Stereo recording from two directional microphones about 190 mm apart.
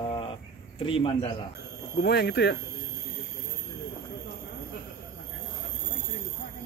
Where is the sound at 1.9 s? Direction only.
60° left (ahead or behind).